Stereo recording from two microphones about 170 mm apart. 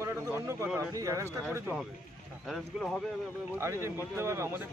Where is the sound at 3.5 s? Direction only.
15° right (ahead or behind).